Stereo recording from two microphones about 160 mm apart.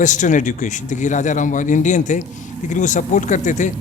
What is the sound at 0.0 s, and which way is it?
A man's voice, 50° left (ahead or behind).